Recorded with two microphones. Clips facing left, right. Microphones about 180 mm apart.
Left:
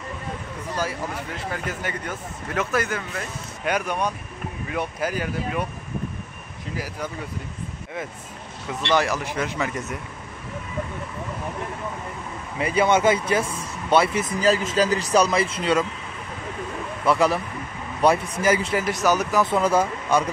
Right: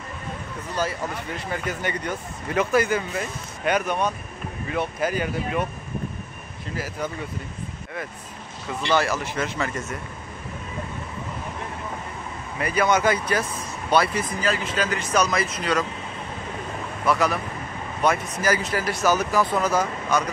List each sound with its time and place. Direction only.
1.5 s speech: 5° left (ahead or behind)
3.7 s speech: 10° left (ahead or behind)
6.7 s speech: 10° left (ahead or behind)
8.9 s speech: 15° left (ahead or behind)
12.5 s speech: 25° left (ahead or behind)
14.4 s speech: 35° left (ahead or behind)
17.0 s speech: 30° left (ahead or behind)